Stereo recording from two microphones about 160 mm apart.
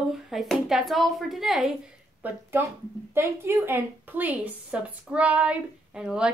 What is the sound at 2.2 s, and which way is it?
A woman's voice, 15° right (ahead or behind).